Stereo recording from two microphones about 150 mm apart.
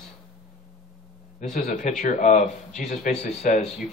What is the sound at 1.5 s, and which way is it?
Speech, 50° left (ahead or behind).